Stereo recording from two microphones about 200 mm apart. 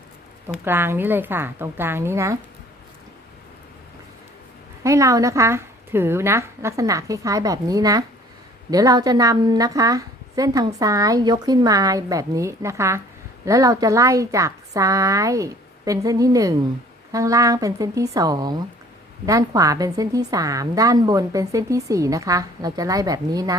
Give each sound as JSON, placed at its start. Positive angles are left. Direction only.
{"t": 0.4, "sound": "a woman's voice", "side_deg": -10}
{"t": 4.8, "sound": "a woman's voice", "side_deg": -15}